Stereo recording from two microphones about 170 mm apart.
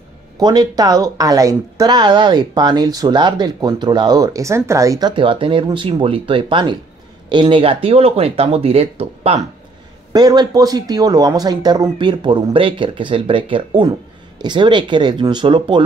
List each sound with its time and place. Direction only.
0.4 s speech: 25° right (ahead or behind)
10.1 s speech: 25° right (ahead or behind)